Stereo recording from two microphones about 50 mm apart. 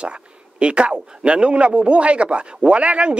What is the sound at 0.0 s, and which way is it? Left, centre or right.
Speech, right.